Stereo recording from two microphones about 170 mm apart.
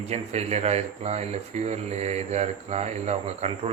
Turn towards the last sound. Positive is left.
turn(degrees=-40)  # may be behind; listen again after turning